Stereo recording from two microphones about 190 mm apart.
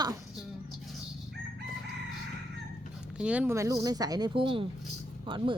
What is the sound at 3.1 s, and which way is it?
A woman's voice, 5° right (ahead or behind).